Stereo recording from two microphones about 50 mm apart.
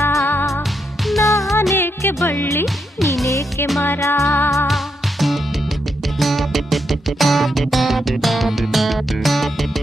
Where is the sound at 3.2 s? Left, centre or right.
Left.